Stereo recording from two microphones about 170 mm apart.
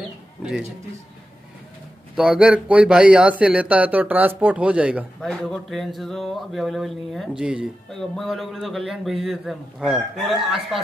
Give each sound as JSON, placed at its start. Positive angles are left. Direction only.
{"t": 0.4, "sound": "speech", "side_deg": -5}
{"t": 2.1, "sound": "speech", "side_deg": -5}